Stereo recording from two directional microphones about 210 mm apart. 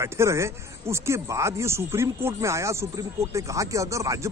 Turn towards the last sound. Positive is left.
turn(degrees=-15)  # may be behind; listen again after turning